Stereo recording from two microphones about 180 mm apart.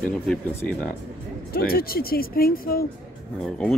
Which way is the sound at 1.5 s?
55° left (ahead or behind).